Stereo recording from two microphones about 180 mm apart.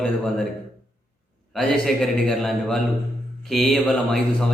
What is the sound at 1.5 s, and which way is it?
A man's voice, centre (ahead or behind).